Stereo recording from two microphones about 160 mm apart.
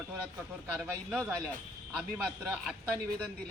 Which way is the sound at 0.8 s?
5° right (ahead or behind).